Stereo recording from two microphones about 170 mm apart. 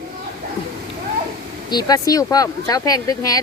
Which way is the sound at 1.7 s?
20° left (ahead or behind).